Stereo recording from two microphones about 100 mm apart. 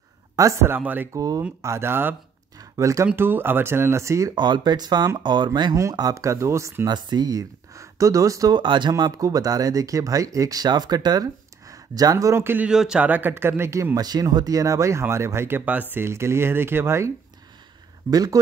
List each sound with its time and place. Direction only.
0.4 s speech: 30° right (ahead or behind)
1.1 s speech: 40° right (ahead or behind)
1.6 s speech: 25° right (ahead or behind)
2.6 s a sound: 35° right (ahead or behind)
3.2 s speech: 20° right (ahead or behind)
4.4 s speech: 50° right (ahead or behind)
5.8 s speech: 35° right (ahead or behind)
6.9 s speech: 45° right (ahead or behind)
8.5 s speech: 50° right (ahead or behind); by 12.6 s 25° right (ahead or behind)
12.6 s speech: 10° right (ahead or behind); by 17.1 s 25° right (ahead or behind)
18.1 s speech: 40° right (ahead or behind)